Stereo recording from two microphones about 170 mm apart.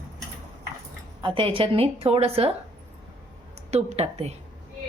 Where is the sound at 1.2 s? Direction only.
30° right (ahead or behind).